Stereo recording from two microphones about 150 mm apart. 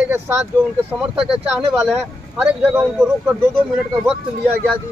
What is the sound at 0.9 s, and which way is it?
Speech, 5° right (ahead or behind).